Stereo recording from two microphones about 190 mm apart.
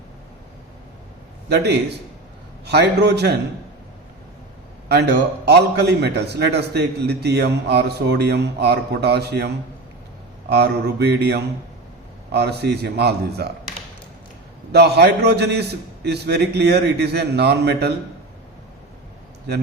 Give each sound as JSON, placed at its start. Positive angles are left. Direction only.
{"t": 1.5, "sound": "a man's voice", "side_deg": -60}
{"t": 5.5, "sound": "a man's voice", "side_deg": -60}
{"t": 10.5, "sound": "a man's voice", "side_deg": -60}
{"t": 14.7, "sound": "a man's voice", "side_deg": -60}